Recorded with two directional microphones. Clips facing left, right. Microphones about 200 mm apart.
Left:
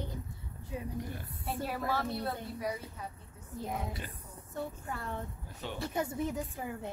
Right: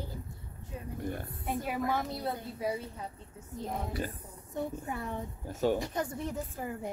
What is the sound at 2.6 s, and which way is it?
Speech, 30° right (ahead or behind).